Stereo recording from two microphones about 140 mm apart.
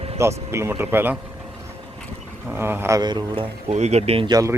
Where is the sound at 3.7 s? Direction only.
50° right (ahead or behind).